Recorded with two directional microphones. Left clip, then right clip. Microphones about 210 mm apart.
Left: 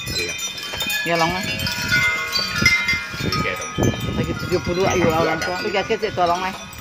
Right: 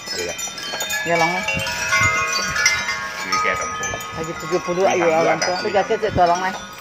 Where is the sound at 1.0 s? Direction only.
45° left (ahead or behind).